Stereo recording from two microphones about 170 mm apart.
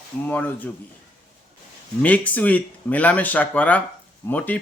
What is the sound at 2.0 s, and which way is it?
Speech, 10° left (ahead or behind).